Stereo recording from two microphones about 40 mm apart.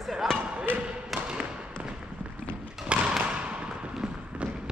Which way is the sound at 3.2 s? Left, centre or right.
Right.